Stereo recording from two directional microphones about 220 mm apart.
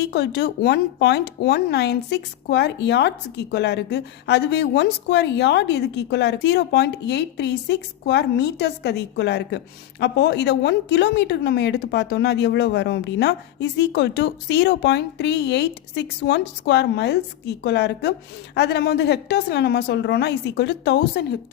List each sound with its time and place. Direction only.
0.0 s speech: 50° left (ahead or behind)